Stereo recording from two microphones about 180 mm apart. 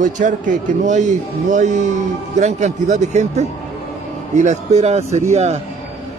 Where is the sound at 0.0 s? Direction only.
45° right (ahead or behind).